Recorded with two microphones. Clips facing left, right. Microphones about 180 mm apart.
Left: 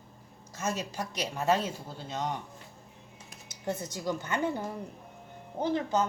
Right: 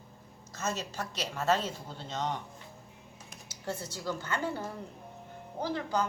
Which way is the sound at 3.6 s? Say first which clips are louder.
Left 3 dB; 15° left (ahead or behind).